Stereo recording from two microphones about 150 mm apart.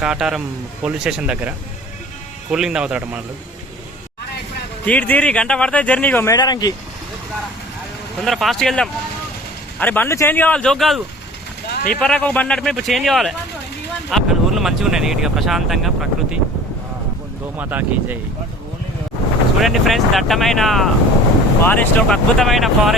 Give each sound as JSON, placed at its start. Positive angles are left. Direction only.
{"t": 0.0, "sound": "speech", "side_deg": -5}
{"t": 4.9, "sound": "speech", "side_deg": 10}
{"t": 6.3, "sound": "speech", "side_deg": 25}
{"t": 8.2, "sound": "speech", "side_deg": 0}
{"t": 17.6, "sound": "speech", "side_deg": -10}
{"t": 19.6, "sound": "speech", "side_deg": 0}